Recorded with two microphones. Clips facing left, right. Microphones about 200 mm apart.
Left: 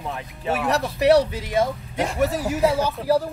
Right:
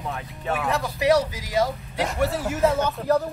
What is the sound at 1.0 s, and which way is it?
Speech, 65° left (ahead or behind).